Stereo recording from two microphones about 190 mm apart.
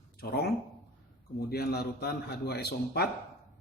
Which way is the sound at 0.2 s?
55° left (ahead or behind).